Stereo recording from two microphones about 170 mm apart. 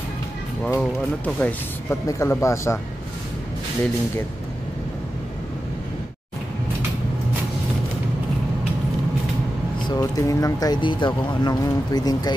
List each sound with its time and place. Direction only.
0.7 s speech: 10° left (ahead or behind)
9.8 s speech: 20° left (ahead or behind)